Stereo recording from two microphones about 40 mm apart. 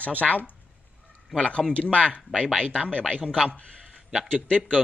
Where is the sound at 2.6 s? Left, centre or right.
Right.